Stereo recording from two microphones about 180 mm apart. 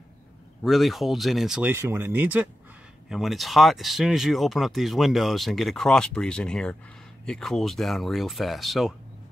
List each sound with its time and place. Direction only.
0.7 s speech: centre (ahead or behind)